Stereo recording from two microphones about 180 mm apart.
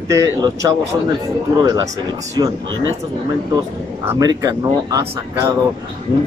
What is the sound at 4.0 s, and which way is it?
Speech, 15° right (ahead or behind).